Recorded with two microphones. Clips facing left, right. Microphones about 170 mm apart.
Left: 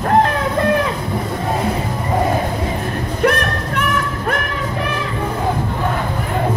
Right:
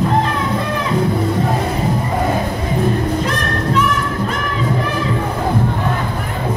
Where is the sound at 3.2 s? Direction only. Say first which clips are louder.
Left 2 dB; 60° left (ahead or behind).